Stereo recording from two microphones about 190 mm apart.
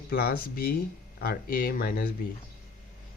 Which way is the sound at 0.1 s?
55° left (ahead or behind).